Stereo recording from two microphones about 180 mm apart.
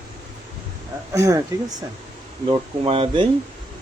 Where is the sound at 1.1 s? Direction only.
20° right (ahead or behind).